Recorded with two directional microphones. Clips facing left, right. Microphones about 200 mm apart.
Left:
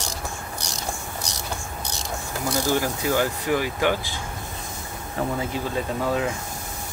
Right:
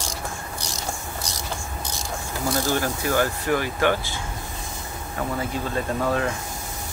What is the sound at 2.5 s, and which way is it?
Speech, 15° left (ahead or behind).